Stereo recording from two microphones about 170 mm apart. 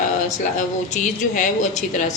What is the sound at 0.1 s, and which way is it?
Speech, 45° left (ahead or behind).